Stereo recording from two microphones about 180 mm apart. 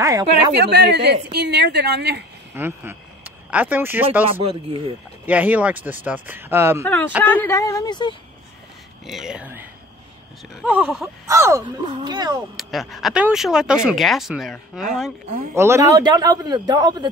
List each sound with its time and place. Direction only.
0.0 s speech: 15° right (ahead or behind)
0.7 s a woman's voice: 70° right (ahead or behind)
2.5 s speech: 10° right (ahead or behind)
4.4 s speech: 30° right (ahead or behind)
5.2 s speech: 10° right (ahead or behind)
7.2 s a woman's voice: 10° left (ahead or behind)
9.0 s speech: centre (ahead or behind)
11.2 s a man's voice: 15° right (ahead or behind)
12.4 s speech: centre (ahead or behind)
15.5 s a man's voice: 15° right (ahead or behind)